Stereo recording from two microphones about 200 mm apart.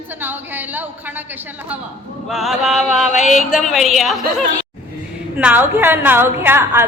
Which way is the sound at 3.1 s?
35° left (ahead or behind).